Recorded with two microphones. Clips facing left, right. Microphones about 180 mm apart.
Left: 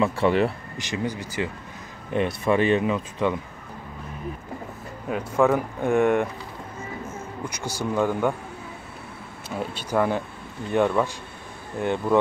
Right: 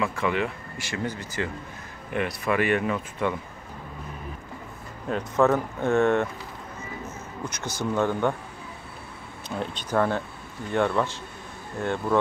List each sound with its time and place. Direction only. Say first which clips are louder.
0.0 s speech: left 5 dB; 35° left (ahead or behind)
0.7 s speech: left 3 dB; 20° left (ahead or behind)
2.1 s speech: left 4 dB; 25° left (ahead or behind)
5.0 s speech: left 1 dB; 10° left (ahead or behind)
7.4 s speech: even; 10° left (ahead or behind)
9.6 s speech: left 1 dB; 10° left (ahead or behind)